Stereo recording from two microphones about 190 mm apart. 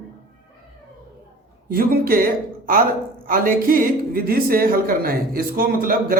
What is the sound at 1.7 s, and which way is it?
Speech, 50° right (ahead or behind).